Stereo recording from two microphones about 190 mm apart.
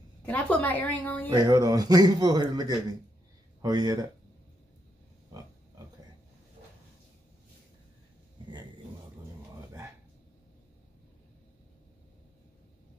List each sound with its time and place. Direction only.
0.2 s a woman's voice: 5° left (ahead or behind)
1.3 s speech: 20° right (ahead or behind)